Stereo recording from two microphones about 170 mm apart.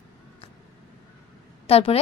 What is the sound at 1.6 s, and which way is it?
Speech, 35° left (ahead or behind).